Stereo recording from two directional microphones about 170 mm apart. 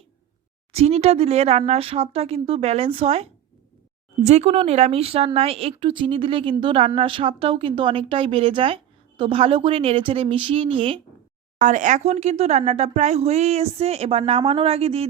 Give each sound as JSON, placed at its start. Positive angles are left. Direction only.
{"t": 0.7, "sound": "speech", "side_deg": -35}
{"t": 11.6, "sound": "speech", "side_deg": -50}